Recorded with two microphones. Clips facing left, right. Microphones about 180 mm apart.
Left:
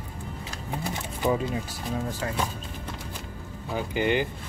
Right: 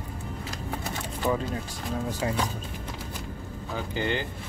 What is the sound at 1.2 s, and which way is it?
Speech, 10° left (ahead or behind).